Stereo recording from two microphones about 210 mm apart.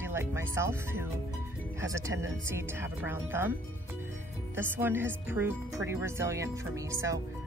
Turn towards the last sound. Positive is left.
turn(degrees=-15)  # may be behind; listen again after turning